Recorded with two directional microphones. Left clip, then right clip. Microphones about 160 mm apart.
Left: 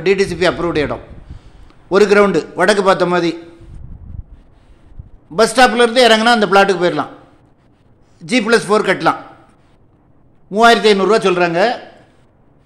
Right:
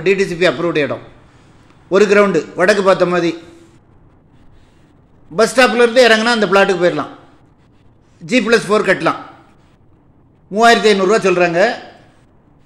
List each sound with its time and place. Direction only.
0.0 s a man's voice: 20° left (ahead or behind)
5.3 s a man's voice: 20° left (ahead or behind)
8.2 s a man's voice: 15° left (ahead or behind)
10.5 s a man's voice: 15° left (ahead or behind)